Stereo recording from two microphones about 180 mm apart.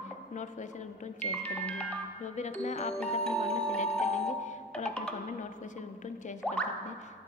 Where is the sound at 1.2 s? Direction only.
5° left (ahead or behind).